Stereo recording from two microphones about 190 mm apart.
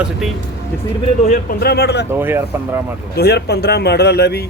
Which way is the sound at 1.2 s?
45° left (ahead or behind).